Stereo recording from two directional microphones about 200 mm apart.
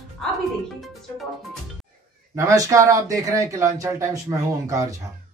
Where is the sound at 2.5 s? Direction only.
15° right (ahead or behind).